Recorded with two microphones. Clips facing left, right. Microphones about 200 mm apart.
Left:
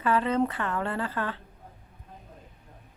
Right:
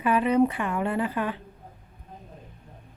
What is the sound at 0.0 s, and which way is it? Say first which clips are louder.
Speech: right 4 dB; 15° right (ahead or behind).